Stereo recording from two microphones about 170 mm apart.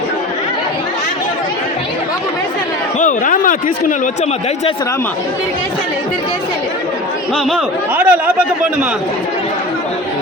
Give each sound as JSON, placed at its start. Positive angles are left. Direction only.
{"t": 3.0, "sound": "speech", "side_deg": 50}
{"t": 7.9, "sound": "a man's voice", "side_deg": -10}